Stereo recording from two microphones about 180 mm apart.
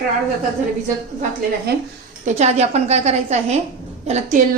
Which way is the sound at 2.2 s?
40° right (ahead or behind).